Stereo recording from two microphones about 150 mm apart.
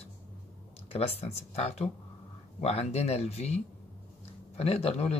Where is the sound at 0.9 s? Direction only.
40° left (ahead or behind).